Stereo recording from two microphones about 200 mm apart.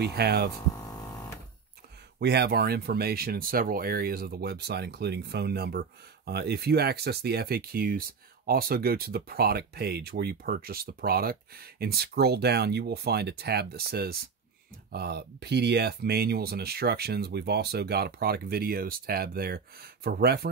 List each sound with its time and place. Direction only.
0.1 s speech: 55° right (ahead or behind)
0.7 s a sound: 15° left (ahead or behind)
2.1 s speech: 55° right (ahead or behind)